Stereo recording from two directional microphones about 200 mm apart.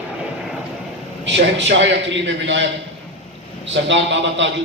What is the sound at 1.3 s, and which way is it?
A man's voice, 60° right (ahead or behind).